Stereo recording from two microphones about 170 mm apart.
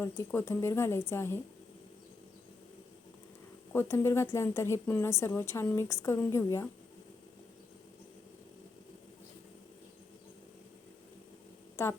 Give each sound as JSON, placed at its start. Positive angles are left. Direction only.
{"t": 0.0, "sound": "speech", "side_deg": 15}
{"t": 3.7, "sound": "speech", "side_deg": 15}
{"t": 11.8, "sound": "speech", "side_deg": 15}